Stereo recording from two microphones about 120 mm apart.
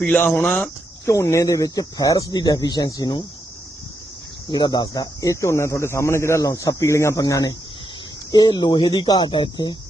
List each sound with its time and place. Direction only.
0.0 s speech: 10° left (ahead or behind)
1.0 s speech: 25° left (ahead or behind)
4.5 s speech: 35° left (ahead or behind)